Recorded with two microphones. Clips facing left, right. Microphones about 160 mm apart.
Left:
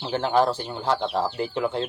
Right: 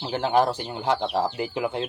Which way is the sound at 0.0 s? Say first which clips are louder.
Even; 15° right (ahead or behind).